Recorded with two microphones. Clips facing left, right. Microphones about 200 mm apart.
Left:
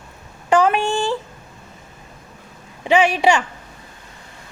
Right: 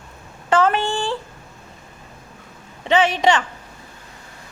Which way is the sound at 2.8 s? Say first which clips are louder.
Left 1 dB; 10° left (ahead or behind).